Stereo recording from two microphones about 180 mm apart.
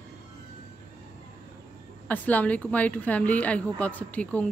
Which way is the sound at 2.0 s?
10° left (ahead or behind).